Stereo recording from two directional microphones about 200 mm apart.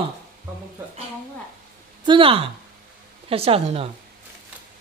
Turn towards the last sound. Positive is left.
turn(degrees=-30)  # may be behind; listen again after turning